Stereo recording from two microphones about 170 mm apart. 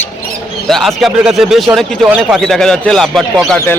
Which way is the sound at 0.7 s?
Centre (ahead or behind).